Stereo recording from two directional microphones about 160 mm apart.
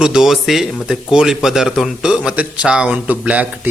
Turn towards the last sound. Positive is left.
turn(degrees=-10)  # may be behind; listen again after turning